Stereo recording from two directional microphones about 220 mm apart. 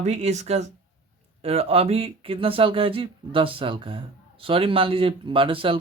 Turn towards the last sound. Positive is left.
turn(degrees=-25)  # may be behind; listen again after turning